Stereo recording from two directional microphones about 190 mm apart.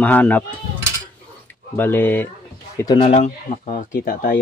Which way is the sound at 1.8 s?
10° left (ahead or behind).